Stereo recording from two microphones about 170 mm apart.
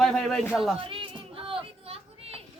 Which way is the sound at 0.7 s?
30° right (ahead or behind).